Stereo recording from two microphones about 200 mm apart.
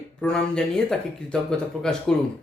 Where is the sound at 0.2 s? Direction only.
5° left (ahead or behind).